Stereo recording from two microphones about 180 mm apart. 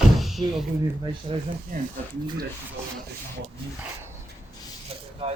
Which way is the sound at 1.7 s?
50° right (ahead or behind).